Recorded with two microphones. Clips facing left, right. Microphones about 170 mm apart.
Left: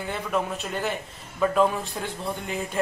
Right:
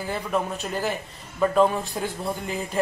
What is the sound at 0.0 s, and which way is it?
Speech, centre (ahead or behind).